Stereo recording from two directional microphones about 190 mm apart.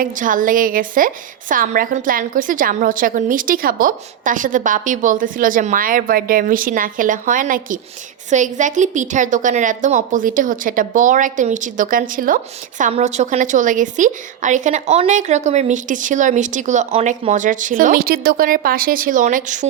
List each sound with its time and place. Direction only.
0.0 s a woman's voice: 45° right (ahead or behind)